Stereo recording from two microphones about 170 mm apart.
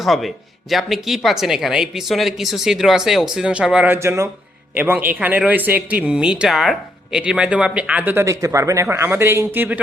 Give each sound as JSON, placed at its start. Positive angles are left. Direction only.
{"t": 0.0, "sound": "speech", "side_deg": 0}